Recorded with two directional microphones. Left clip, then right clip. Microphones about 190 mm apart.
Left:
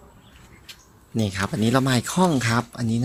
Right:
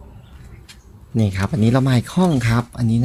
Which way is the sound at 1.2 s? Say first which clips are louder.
Right 3 dB; 10° right (ahead or behind).